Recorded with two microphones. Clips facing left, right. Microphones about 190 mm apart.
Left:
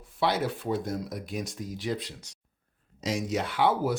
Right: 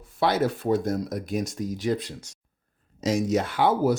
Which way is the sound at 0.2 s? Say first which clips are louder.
Right 4 dB; 45° right (ahead or behind).